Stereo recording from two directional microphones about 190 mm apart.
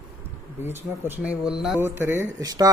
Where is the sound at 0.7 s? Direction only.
10° right (ahead or behind).